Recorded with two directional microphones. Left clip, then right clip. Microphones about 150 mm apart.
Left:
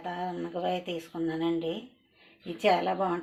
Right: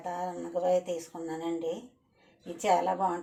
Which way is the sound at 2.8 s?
45° left (ahead or behind).